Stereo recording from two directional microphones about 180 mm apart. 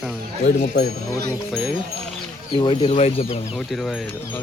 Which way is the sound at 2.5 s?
30° left (ahead or behind).